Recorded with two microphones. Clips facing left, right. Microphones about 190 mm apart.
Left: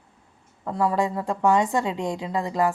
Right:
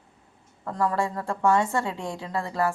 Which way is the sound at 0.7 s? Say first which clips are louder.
Left 3 dB; 15° left (ahead or behind).